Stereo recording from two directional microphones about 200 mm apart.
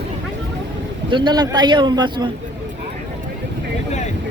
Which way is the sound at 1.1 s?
25° right (ahead or behind).